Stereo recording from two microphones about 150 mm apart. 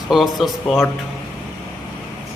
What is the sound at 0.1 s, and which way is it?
Speech, centre (ahead or behind).